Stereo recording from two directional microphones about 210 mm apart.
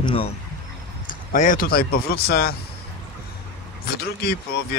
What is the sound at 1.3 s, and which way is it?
Speech, 40° left (ahead or behind).